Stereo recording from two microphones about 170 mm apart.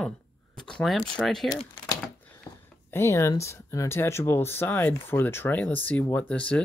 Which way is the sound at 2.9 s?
15° left (ahead or behind).